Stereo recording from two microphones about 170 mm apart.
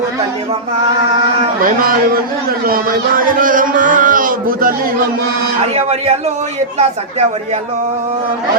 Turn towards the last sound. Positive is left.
turn(degrees=-40)  # may be behind; listen again after turning